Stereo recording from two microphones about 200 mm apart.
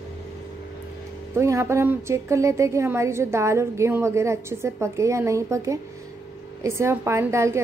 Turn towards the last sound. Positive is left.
turn(degrees=-15)  # may be behind; listen again after turning